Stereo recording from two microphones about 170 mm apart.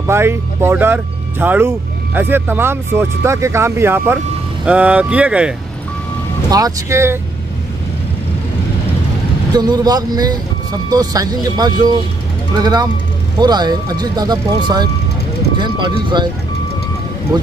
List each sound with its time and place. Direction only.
0.0 s speech: 15° right (ahead or behind)
6.5 s speech: 20° right (ahead or behind)
9.5 s speech: 25° right (ahead or behind)